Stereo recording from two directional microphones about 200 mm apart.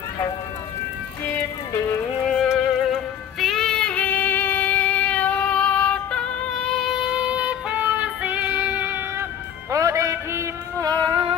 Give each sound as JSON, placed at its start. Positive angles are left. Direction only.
{"t": 1.2, "sound": "music", "side_deg": 10}
{"t": 2.3, "sound": "music", "side_deg": 0}